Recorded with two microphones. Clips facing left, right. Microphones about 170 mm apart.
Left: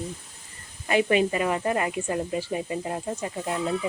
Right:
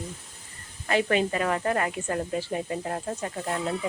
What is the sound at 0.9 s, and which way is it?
Speech, 10° left (ahead or behind).